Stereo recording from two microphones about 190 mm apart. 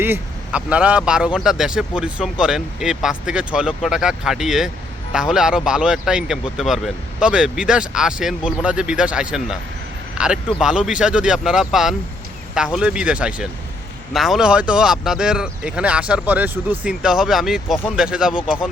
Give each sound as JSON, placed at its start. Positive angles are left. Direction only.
{"t": 0.0, "sound": "speech", "side_deg": -10}